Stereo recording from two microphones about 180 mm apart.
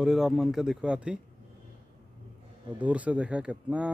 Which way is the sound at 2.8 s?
10° right (ahead or behind).